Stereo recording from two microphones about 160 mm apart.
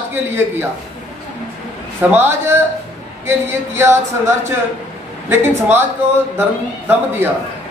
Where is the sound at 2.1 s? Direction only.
15° right (ahead or behind).